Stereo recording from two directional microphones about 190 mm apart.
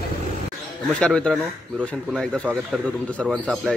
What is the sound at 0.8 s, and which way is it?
Speech, 5° left (ahead or behind).